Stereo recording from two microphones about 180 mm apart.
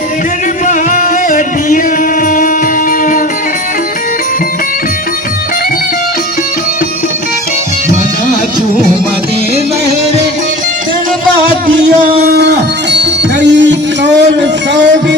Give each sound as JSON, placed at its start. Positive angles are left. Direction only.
{"t": 0.7, "sound": "music", "side_deg": 45}
{"t": 12.3, "sound": "music", "side_deg": -70}